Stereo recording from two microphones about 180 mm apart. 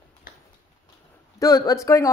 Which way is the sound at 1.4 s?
20° left (ahead or behind).